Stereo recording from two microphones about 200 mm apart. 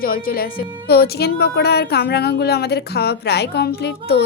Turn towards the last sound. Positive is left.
turn(degrees=55)  # may be behind; listen again after turning